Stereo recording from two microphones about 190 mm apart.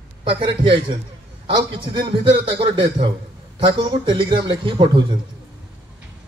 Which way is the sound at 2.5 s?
25° right (ahead or behind).